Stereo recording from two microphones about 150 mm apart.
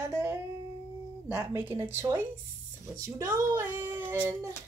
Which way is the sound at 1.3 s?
15° right (ahead or behind).